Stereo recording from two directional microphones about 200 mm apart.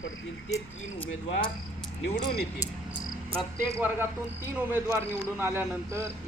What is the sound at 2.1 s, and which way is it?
Speech, 50° left (ahead or behind).